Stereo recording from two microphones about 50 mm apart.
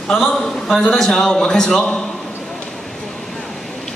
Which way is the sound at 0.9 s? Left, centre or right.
Centre.